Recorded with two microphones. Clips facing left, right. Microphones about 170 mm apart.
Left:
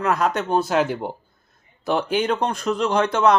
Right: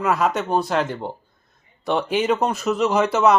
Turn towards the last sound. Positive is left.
turn(degrees=-5)  # may be behind; listen again after turning